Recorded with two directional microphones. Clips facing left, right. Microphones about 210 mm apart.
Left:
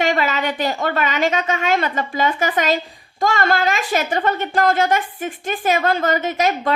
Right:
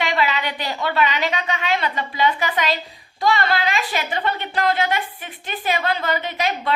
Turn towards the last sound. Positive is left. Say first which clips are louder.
# left 4 dB
turn(degrees=45)  # may be behind; listen again after turning